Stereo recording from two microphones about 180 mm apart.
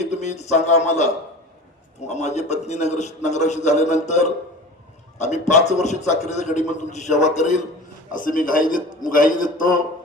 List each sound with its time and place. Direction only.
0.1 s a sound: 40° left (ahead or behind)
0.5 s a man's voice: 40° left (ahead or behind)
2.0 s a man's voice: 40° left (ahead or behind)